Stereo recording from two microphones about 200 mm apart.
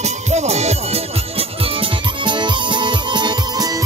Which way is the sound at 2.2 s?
25° right (ahead or behind).